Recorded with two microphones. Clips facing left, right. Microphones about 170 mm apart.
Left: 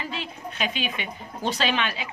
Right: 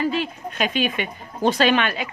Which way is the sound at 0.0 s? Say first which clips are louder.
Right 10 dB; 50° right (ahead or behind).